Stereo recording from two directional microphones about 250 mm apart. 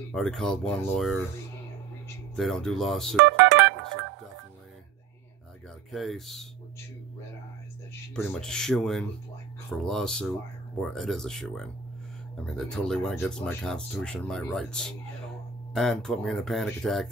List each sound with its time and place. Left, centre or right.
0.1 s speech: centre
2.3 s speech: centre
5.9 s speech: centre
8.1 s speech: centre